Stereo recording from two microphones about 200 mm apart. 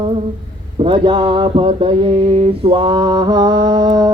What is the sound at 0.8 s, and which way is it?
Mantra, 25° right (ahead or behind).